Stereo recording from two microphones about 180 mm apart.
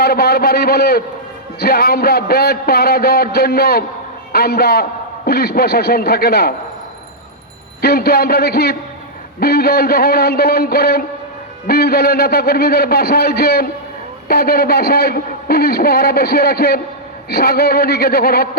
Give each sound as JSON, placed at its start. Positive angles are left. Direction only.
{"t": 0.0, "sound": "a man's voice", "side_deg": 60}
{"t": 7.8, "sound": "a man's voice", "side_deg": 60}